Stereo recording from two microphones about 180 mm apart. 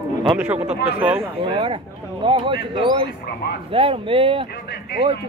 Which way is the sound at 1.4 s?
30° right (ahead or behind).